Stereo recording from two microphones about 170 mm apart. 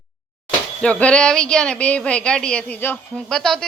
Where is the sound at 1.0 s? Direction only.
5° left (ahead or behind).